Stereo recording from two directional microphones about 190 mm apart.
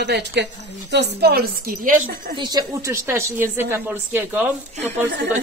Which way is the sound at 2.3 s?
25° right (ahead or behind).